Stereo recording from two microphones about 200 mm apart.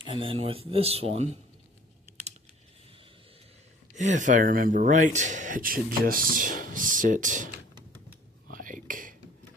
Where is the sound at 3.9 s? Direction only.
40° right (ahead or behind).